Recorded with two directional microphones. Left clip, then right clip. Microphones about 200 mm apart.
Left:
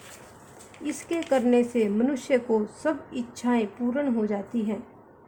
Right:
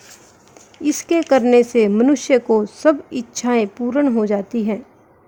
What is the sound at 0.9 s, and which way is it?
Speech, 50° right (ahead or behind).